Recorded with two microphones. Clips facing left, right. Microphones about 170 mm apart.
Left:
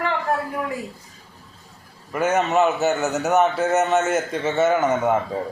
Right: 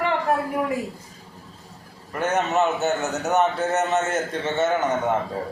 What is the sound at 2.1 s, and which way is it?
A man's voice, centre (ahead or behind).